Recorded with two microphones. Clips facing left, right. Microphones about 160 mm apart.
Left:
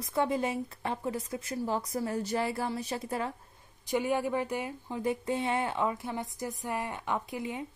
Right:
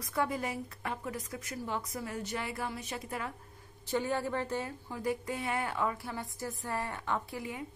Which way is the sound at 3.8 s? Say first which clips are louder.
Left 3 dB; 15° left (ahead or behind).